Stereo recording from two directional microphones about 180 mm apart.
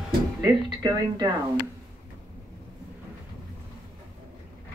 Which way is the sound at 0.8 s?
20° right (ahead or behind).